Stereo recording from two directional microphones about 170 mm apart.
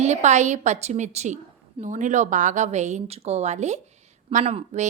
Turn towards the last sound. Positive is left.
turn(degrees=-40)  # may be behind; listen again after turning